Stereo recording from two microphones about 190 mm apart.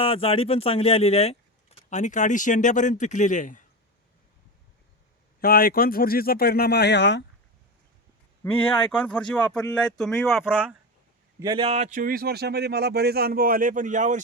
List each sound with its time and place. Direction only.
0.0 s speech: 30° left (ahead or behind)
5.4 s speech: 50° left (ahead or behind); by 7.3 s 65° left (ahead or behind)
8.4 s speech: 10° left (ahead or behind)
11.3 s speech: 25° right (ahead or behind)
11.9 s speech: 45° right (ahead or behind)